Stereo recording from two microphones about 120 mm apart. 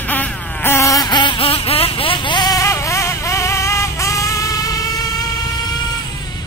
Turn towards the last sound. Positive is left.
turn(degrees=35)  # may be behind; listen again after turning